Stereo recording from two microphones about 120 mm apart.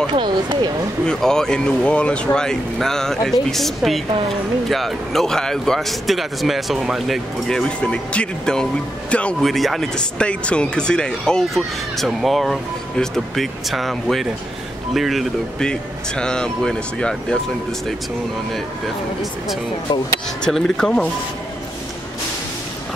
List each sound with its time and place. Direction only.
0.1 s speech: 40° right (ahead or behind)
1.0 s speech: 5° left (ahead or behind)
20.4 s speech: 5° left (ahead or behind)